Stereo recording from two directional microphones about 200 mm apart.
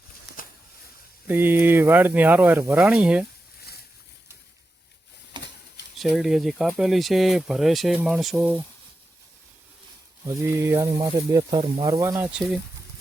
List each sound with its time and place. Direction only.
0.3 s a sound: centre (ahead or behind)
1.3 s speech: 10° right (ahead or behind)
5.3 s a sound: 25° right (ahead or behind)
6.0 s speech: centre (ahead or behind)
10.2 s speech: 15° right (ahead or behind)
12.3 s speech: centre (ahead or behind)